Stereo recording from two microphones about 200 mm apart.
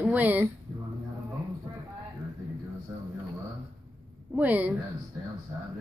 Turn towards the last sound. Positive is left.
turn(degrees=-10)  # may be behind; listen again after turning